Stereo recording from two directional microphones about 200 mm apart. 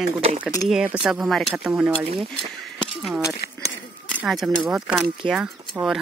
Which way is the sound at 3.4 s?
55° left (ahead or behind).